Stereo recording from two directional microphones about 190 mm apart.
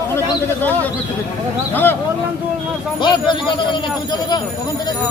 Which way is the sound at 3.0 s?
25° left (ahead or behind).